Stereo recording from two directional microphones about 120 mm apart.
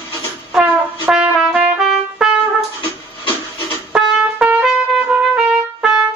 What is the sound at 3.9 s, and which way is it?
Trumpet, 5° right (ahead or behind).